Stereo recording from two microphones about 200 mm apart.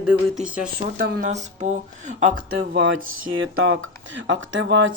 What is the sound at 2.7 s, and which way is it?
Speech, 70° right (ahead or behind).